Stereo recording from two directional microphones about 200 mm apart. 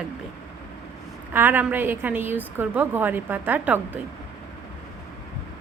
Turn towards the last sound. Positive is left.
turn(degrees=-10)  # may be behind; listen again after turning